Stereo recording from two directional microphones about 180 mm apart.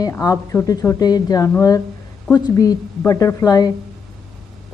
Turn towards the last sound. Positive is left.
turn(degrees=20)  # may be behind; listen again after turning